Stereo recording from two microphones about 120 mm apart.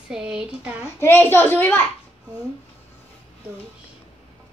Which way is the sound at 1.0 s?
20° left (ahead or behind).